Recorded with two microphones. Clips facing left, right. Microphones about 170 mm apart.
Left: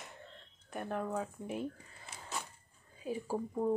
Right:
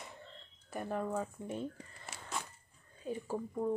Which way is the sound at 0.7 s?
Centre (ahead or behind).